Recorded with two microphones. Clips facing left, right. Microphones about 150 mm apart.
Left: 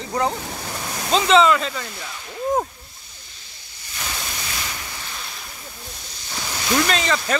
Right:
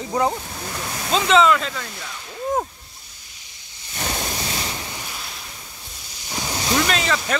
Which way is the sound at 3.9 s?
35° right (ahead or behind).